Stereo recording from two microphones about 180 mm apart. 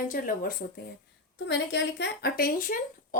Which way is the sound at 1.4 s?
80° left.